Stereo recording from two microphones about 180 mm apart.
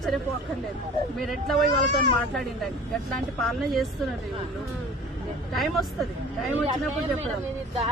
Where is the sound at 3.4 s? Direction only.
Centre (ahead or behind).